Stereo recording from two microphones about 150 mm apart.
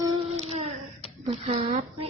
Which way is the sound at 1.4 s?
50° right (ahead or behind).